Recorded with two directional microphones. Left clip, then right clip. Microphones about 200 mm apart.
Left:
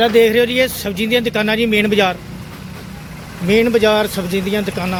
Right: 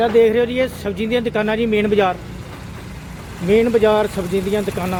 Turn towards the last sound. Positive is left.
turn(degrees=0)  # may be behind; listen again after turning